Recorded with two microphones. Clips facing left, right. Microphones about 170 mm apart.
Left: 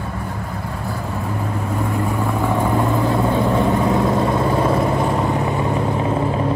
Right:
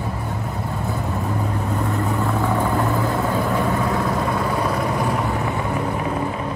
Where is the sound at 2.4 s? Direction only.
15° left (ahead or behind).